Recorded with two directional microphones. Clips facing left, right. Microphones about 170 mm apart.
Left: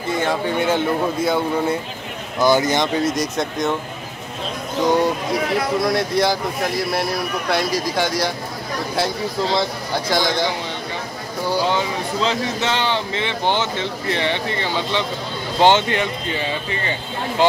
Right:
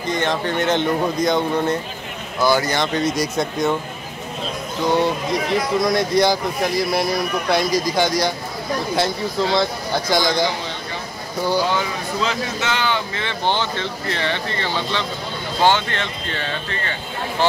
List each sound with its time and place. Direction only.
0.0 s speech: 5° left (ahead or behind)
2.4 s speech: 20° left (ahead or behind)
2.9 s speech: 5° left (ahead or behind)
5.0 s speech: 5° left (ahead or behind)
10.0 s speech: centre (ahead or behind)
11.5 s speech: 30° left (ahead or behind)
13.2 s speech: 20° left (ahead or behind)